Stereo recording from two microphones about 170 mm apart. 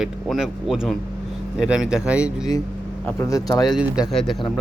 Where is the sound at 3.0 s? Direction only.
15° left (ahead or behind).